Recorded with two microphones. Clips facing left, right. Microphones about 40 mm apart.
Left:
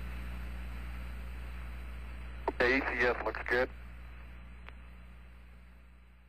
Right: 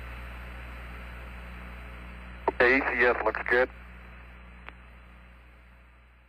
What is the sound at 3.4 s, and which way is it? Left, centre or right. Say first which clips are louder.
Speech: right 6 dB; right.